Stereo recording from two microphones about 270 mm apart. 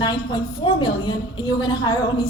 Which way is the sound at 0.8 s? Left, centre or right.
Centre.